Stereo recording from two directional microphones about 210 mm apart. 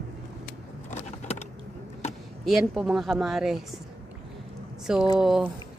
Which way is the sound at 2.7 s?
5° right (ahead or behind).